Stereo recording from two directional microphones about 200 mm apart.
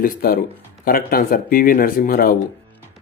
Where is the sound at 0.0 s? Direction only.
45° left (ahead or behind).